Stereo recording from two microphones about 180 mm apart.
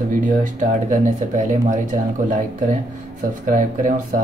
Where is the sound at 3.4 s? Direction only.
45° right (ahead or behind).